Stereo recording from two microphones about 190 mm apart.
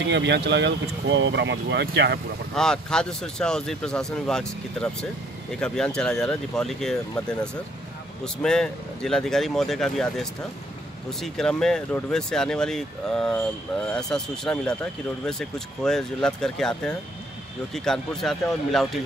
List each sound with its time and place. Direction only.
0.1 s speech: 70° right (ahead or behind)
2.5 s speech: 5° left (ahead or behind)
5.6 s speech: 5° left (ahead or behind)